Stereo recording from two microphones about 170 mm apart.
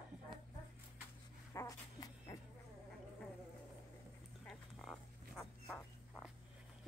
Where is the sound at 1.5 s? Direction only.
20° left (ahead or behind).